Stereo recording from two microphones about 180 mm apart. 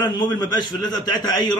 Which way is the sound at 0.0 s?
25° left (ahead or behind).